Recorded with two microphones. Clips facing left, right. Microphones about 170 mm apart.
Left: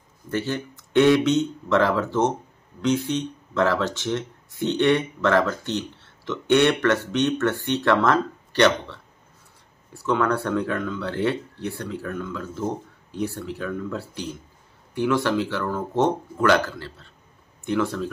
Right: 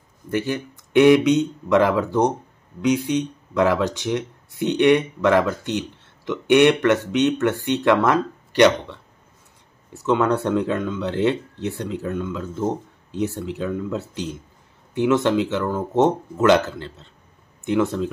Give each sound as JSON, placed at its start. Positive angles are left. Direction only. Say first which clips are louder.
{"t": 0.3, "sound": "speech", "louder": "right 3 dB", "side_deg": -15}